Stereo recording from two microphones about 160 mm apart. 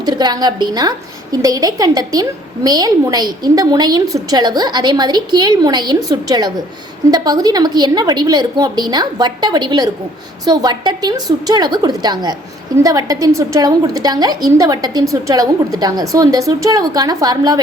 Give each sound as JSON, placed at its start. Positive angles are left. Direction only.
{"t": 0.0, "sound": "a woman's voice", "side_deg": -25}